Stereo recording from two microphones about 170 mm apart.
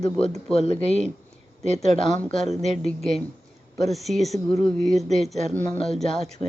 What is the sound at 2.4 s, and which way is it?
Speech, 40° right (ahead or behind).